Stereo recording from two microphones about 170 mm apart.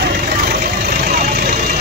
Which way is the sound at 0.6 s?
65° right (ahead or behind).